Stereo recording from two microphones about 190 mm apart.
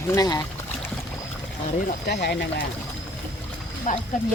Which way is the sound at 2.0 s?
60° left (ahead or behind).